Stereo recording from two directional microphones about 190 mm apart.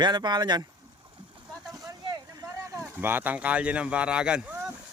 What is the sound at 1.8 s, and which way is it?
Vehicle, 20° right (ahead or behind).